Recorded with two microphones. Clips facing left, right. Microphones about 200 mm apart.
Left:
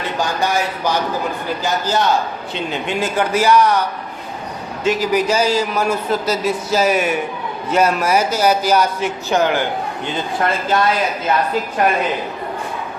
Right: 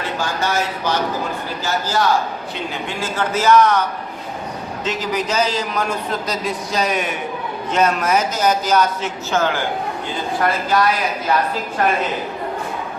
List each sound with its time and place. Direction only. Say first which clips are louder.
0.3 s a man's voice: left 2 dB; 15° left (ahead or behind)
4.8 s a man's voice: left 6 dB; 10° left (ahead or behind)
10.4 s speech: even; 25° left (ahead or behind)